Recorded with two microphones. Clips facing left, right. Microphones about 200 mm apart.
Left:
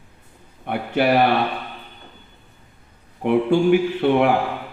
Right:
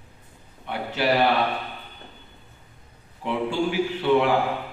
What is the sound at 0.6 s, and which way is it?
Speech, 55° left (ahead or behind).